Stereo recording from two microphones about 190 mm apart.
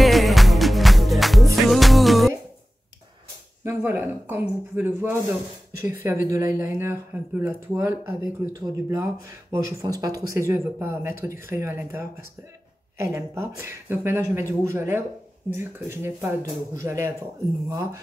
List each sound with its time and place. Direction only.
0.0 s music: centre (ahead or behind)
3.6 s speech: 10° right (ahead or behind)